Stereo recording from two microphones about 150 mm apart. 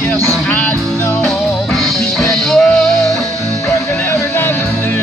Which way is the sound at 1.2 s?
Centre (ahead or behind).